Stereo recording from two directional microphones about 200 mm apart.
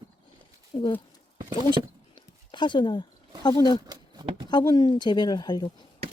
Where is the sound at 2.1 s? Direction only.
25° left (ahead or behind).